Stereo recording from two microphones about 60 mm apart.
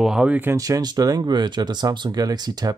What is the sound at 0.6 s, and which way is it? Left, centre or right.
Speech, right.